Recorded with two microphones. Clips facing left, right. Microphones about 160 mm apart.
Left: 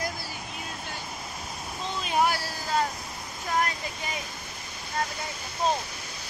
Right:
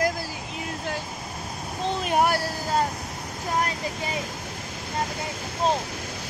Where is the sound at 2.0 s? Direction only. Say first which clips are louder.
Right 2 dB; 55° right (ahead or behind).